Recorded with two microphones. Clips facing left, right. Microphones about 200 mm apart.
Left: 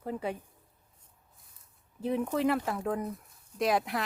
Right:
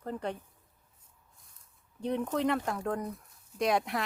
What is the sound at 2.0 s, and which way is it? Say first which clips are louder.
Speech: left 1 dB; 5° left (ahead or behind).